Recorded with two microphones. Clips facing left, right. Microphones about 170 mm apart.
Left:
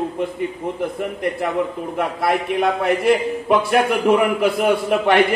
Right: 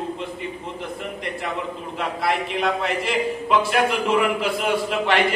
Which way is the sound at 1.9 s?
55° left (ahead or behind).